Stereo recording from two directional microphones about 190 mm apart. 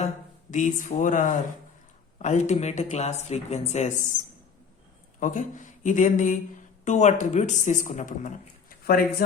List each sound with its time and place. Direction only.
0.5 s speech: 40° left (ahead or behind)
5.2 s speech: 40° left (ahead or behind)
8.8 s speech: 50° left (ahead or behind)